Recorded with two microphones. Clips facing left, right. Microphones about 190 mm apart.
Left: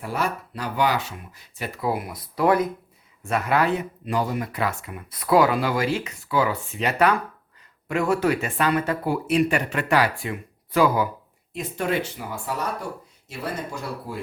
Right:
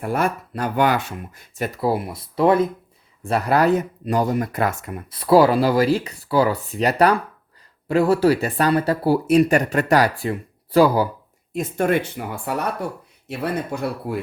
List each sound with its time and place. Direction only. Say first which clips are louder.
0.0 s speech: right 5 dB; 50° right (ahead or behind); by 2.6 s 25° right (ahead or behind)
3.2 s speech: right 4 dB; 35° right (ahead or behind)
5.1 s speech: right 5 dB; 30° right (ahead or behind)
11.5 s speech: right 5 dB; 50° right (ahead or behind)